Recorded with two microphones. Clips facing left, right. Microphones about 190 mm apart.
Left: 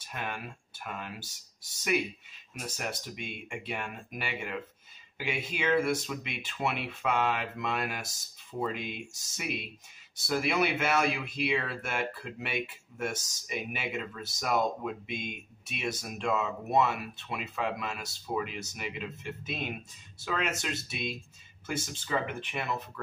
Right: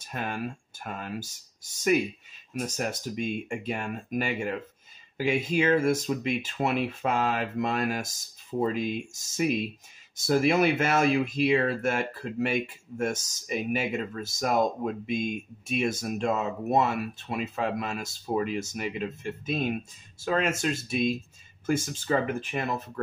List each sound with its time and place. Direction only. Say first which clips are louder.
0.1 s speech: right 6 dB; 40° right (ahead or behind)
2.6 s speech: right 6 dB; 45° right (ahead or behind)